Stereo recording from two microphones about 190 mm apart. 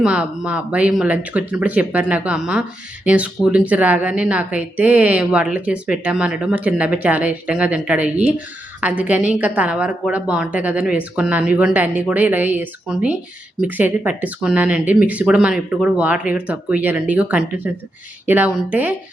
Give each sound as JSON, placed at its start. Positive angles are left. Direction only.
{"t": 0.0, "sound": "speech", "side_deg": -5}